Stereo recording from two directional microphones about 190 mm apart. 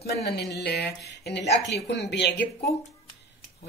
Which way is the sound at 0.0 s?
55° left (ahead or behind).